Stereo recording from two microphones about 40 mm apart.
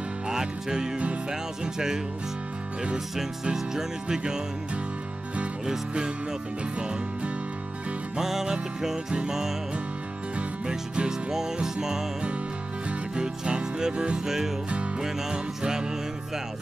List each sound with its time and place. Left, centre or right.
0.3 s music: centre
3.5 s music: centre
5.7 s music: right
8.2 s music: centre
10.3 s music: right
11.1 s music: centre
13.1 s music: centre